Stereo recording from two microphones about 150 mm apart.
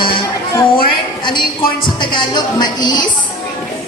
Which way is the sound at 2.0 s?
30° left (ahead or behind).